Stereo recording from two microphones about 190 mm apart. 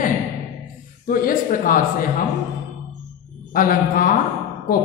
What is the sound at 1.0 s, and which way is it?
A man's voice, 45° left (ahead or behind).